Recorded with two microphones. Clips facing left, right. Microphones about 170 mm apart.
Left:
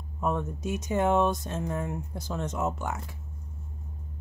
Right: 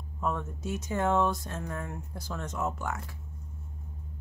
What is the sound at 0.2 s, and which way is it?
Speech, 20° left (ahead or behind).